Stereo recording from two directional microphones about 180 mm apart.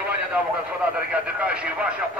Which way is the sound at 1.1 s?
5° right (ahead or behind).